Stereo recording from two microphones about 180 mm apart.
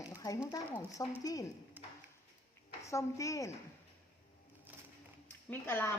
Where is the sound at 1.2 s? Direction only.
20° left (ahead or behind).